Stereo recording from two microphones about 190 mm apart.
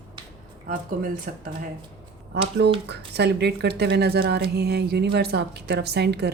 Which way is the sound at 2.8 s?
60° right (ahead or behind).